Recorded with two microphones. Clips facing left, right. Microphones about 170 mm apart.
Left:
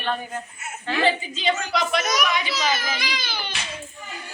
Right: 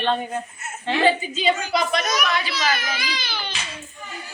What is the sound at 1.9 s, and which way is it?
Speech, 15° left (ahead or behind).